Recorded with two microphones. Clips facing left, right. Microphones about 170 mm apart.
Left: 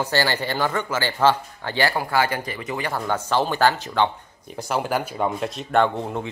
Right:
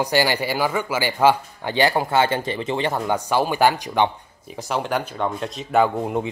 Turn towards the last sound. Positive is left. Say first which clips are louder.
# right 1 dB
turn(degrees=-5)  # may be behind; listen again after turning